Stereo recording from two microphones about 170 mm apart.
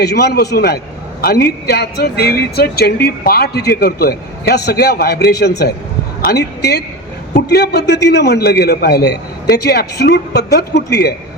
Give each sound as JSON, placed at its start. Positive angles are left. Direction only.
{"t": 0.0, "sound": "a man's voice", "side_deg": 75}